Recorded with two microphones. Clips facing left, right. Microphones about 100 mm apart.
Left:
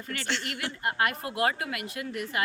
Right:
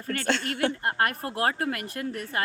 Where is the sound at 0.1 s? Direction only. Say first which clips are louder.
Right 6 dB; 50° right (ahead or behind).